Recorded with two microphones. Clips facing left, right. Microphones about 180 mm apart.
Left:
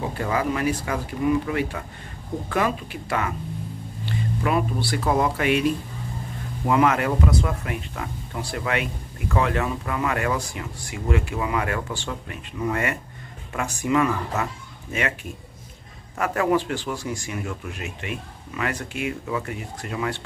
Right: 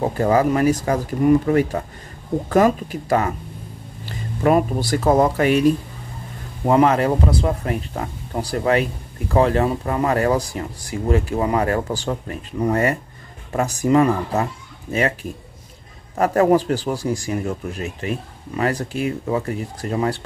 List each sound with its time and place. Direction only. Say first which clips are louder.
0.0 s speech: right 8 dB; 40° right (ahead or behind)
16.2 s speech: right 6 dB; 40° right (ahead or behind)